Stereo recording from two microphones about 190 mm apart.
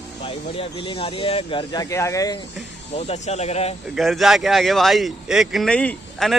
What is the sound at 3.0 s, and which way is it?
Speech, 35° left (ahead or behind).